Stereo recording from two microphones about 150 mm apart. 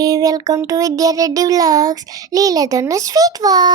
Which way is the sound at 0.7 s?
25° right (ahead or behind).